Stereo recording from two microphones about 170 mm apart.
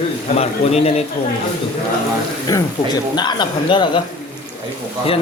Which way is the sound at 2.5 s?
20° left (ahead or behind).